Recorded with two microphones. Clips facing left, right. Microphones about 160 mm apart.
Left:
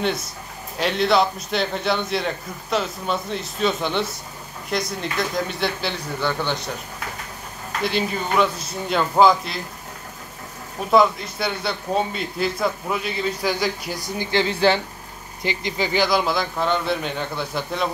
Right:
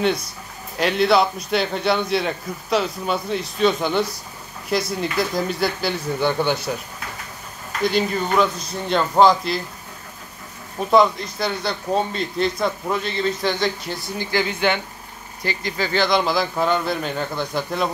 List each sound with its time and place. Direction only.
0.7 s a man's voice: centre (ahead or behind)
7.8 s a man's voice: centre (ahead or behind)
10.9 s a man's voice: centre (ahead or behind)
14.3 s speech: 30° left (ahead or behind)
15.4 s a man's voice: 20° left (ahead or behind); by 17.8 s centre (ahead or behind)